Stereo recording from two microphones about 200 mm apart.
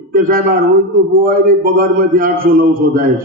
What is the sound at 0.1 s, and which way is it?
A man's voice, 45° right (ahead or behind).